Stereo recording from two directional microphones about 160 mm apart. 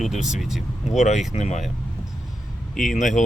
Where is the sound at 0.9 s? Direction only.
45° left (ahead or behind).